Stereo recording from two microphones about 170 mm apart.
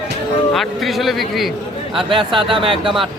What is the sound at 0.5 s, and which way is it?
Speech, centre (ahead or behind).